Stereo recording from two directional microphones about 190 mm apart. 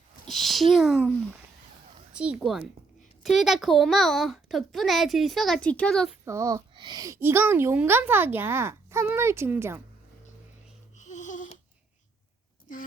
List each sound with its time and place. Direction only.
0.3 s a child's voice: centre (ahead or behind)
2.1 s a child's voice: 5° right (ahead or behind)
6.2 s a woman's voice: 15° right (ahead or behind)
10.9 s a sound: 40° left (ahead or behind)